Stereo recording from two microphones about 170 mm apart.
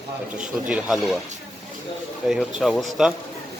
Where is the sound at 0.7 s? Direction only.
5° right (ahead or behind).